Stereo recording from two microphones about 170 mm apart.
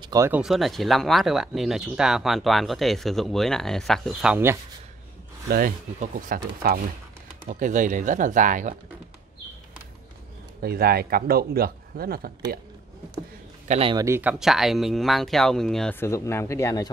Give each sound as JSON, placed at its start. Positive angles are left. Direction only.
{"t": 0.0, "sound": "a sound", "side_deg": -20}
{"t": 0.3, "sound": "speech", "side_deg": 0}
{"t": 5.5, "sound": "speech", "side_deg": -55}
{"t": 10.6, "sound": "speech", "side_deg": -65}
{"t": 13.7, "sound": "speech", "side_deg": -35}
{"t": 13.9, "sound": "speech", "side_deg": -15}
{"t": 14.4, "sound": "speech", "side_deg": 0}